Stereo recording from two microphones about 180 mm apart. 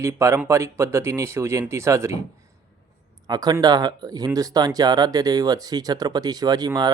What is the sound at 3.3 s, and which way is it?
Speech, 20° right (ahead or behind).